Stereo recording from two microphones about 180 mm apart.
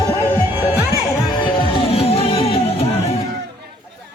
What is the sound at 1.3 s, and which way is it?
Music, 25° left (ahead or behind).